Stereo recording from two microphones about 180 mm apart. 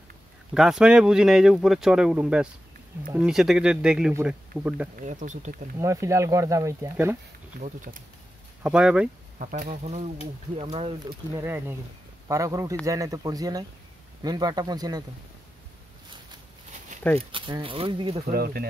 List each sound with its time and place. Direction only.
0.6 s speech: 5° right (ahead or behind)
5.0 s speech: 45° right (ahead or behind)
5.8 s speech: 15° right (ahead or behind)
7.6 s speech: 45° right (ahead or behind)
8.6 s speech: 5° right (ahead or behind)
9.4 s speech: 50° right (ahead or behind)
9.8 s speech: 40° right (ahead or behind)
11.4 s speech: 15° right (ahead or behind)
17.3 s speech: 30° right (ahead or behind)
18.3 s speech: 60° right (ahead or behind)